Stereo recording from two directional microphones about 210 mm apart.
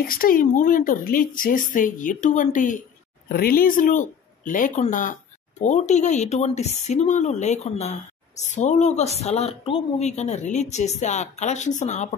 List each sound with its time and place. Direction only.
0.0 s speech: 45° left (ahead or behind)